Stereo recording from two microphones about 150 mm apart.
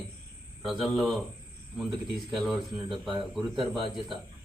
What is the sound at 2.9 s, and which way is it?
Speech, 35° right (ahead or behind).